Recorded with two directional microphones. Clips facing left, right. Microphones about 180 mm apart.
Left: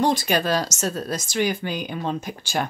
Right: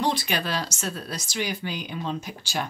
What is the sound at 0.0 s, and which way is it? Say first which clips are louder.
Speech: left 5 dB; 45° left (ahead or behind).